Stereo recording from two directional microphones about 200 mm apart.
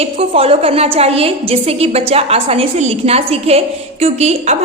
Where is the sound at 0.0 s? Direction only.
30° right (ahead or behind).